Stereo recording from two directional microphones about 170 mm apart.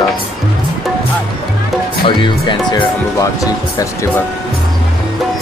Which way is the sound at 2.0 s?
30° left (ahead or behind).